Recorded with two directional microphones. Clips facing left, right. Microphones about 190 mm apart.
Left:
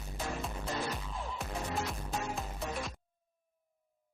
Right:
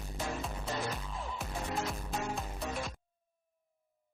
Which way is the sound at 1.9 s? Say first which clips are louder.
Right 1 dB; centre (ahead or behind).